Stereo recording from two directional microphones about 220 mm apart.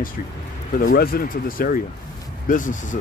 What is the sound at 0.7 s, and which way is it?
Speech, 40° left (ahead or behind).